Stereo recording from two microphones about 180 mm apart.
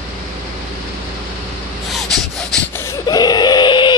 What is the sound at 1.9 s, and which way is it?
Snort, centre (ahead or behind).